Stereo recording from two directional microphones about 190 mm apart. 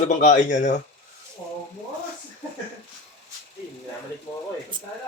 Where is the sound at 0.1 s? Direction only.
40° left (ahead or behind).